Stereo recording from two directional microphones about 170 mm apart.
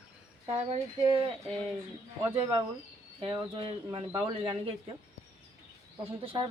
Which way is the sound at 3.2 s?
30° right (ahead or behind).